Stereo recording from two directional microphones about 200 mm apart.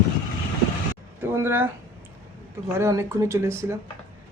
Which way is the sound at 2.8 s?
15° right (ahead or behind).